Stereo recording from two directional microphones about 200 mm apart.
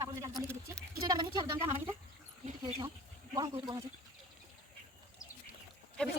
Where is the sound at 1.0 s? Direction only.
20° right (ahead or behind).